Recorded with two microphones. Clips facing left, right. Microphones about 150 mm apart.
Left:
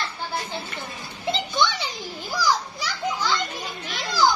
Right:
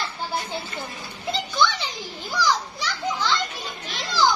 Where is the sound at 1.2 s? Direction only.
20° left (ahead or behind).